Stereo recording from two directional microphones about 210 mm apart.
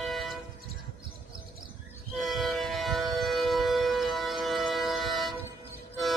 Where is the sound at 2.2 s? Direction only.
Centre (ahead or behind).